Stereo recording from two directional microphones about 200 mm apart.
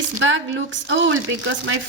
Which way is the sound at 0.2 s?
70° right (ahead or behind).